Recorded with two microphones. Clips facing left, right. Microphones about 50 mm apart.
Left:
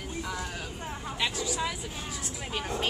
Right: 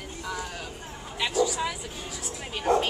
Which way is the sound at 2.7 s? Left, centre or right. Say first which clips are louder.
Right 14 dB; right.